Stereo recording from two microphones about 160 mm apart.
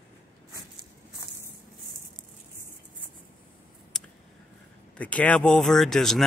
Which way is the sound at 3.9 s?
5° left (ahead or behind).